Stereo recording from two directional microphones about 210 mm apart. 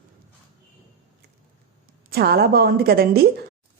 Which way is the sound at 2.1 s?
45° right (ahead or behind).